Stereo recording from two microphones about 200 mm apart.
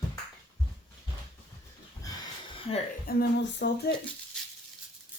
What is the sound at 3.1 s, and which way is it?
Speech, 55° left (ahead or behind).